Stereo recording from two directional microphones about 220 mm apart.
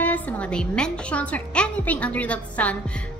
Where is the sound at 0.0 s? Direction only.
5° left (ahead or behind).